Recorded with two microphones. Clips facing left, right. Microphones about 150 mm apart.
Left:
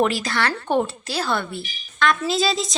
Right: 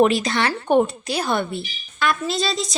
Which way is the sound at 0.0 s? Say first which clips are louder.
Right 4 dB; 20° right (ahead or behind).